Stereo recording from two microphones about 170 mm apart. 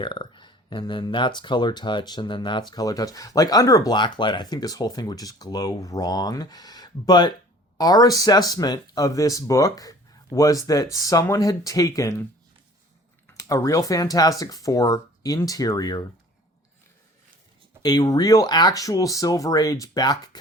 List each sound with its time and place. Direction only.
0.0 s speech: 25° left (ahead or behind)
13.2 s speech: 20° left (ahead or behind)
17.8 s speech: 20° left (ahead or behind)